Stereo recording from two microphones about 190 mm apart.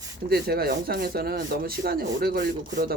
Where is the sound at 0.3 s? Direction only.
55° right (ahead or behind).